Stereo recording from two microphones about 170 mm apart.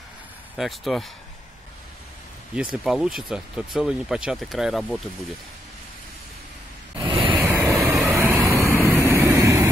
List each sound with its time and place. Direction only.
0.6 s speech: centre (ahead or behind)
2.5 s speech: 5° right (ahead or behind)
7.0 s a sound: 30° right (ahead or behind)
7.3 s vehicle: 15° right (ahead or behind)